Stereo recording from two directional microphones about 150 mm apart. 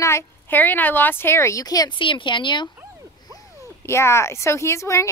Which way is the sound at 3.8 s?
15° left (ahead or behind).